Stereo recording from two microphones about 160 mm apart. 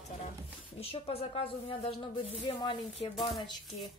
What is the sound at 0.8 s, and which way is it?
A woman's voice, 40° left (ahead or behind).